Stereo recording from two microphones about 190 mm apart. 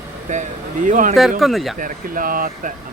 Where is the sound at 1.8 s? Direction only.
45° right (ahead or behind).